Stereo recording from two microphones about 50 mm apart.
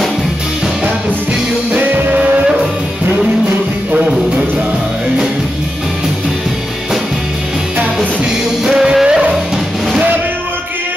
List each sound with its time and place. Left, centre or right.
1.7 s music: right
2.1 s music: right
8.6 s music: centre